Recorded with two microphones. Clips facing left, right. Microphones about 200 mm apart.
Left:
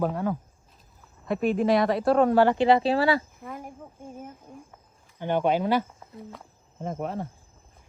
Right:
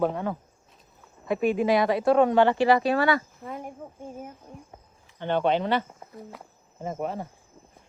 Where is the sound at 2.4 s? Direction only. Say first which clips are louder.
Left 1 dB; 20° left (ahead or behind).